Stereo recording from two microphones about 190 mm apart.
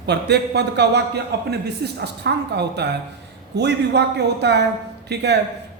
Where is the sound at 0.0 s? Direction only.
60° right (ahead or behind).